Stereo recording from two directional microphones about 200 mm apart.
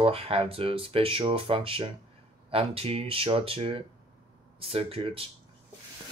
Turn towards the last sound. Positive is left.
turn(degrees=-25)  # may be behind; listen again after turning